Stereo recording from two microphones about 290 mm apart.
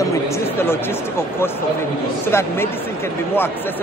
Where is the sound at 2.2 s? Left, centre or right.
Centre.